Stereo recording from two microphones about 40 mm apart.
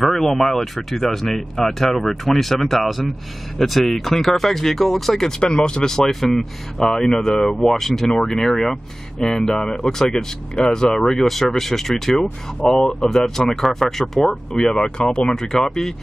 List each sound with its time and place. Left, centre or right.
0.0 s speech: centre
5.4 s speech: left; by 14.7 s centre
14.7 s speech: centre